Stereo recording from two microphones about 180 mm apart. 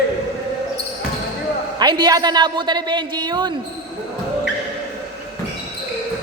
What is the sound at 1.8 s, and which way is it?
A woman's voice, 25° right (ahead or behind).